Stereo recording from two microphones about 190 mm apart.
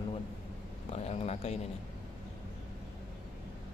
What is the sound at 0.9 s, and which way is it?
Speech, 35° left (ahead or behind).